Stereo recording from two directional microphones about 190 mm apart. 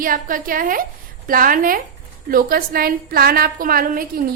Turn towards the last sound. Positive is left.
turn(degrees=-50)  # may be behind; listen again after turning